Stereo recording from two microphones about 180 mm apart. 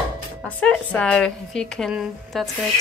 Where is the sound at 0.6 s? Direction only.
5° left (ahead or behind).